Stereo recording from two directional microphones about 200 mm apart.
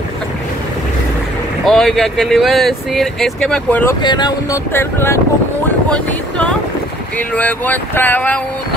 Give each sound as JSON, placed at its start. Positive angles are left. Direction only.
{"t": 1.6, "sound": "speech", "side_deg": 0}
{"t": 4.0, "sound": "speech", "side_deg": 20}